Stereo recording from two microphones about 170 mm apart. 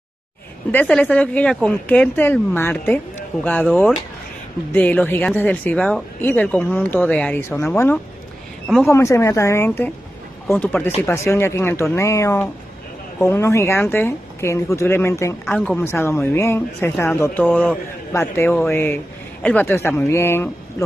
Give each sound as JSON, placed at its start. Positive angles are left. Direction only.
{"t": 0.7, "sound": "speech", "side_deg": 10}